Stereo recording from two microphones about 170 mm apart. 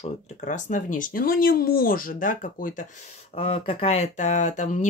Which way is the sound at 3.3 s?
35° left (ahead or behind).